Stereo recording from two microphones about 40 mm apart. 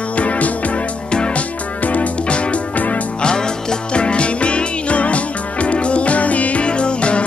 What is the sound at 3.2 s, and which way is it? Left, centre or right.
Music, centre.